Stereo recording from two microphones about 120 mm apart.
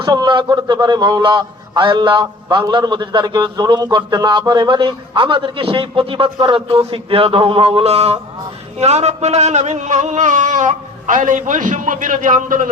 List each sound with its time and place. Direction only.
0.0 s a man's voice: 35° right (ahead or behind); by 12.7 s 90° right